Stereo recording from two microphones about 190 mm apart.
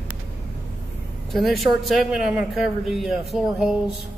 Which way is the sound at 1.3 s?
Centre (ahead or behind).